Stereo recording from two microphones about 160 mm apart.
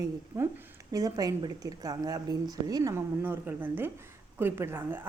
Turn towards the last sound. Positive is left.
turn(degrees=-15)  # may be behind; listen again after turning